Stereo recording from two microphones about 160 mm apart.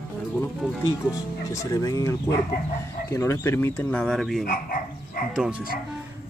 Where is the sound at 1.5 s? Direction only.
20° left (ahead or behind); by 4.4 s centre (ahead or behind).